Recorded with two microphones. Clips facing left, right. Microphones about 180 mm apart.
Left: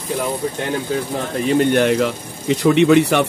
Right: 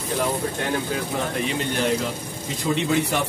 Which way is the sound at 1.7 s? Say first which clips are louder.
Left 8 dB; 65° left (ahead or behind).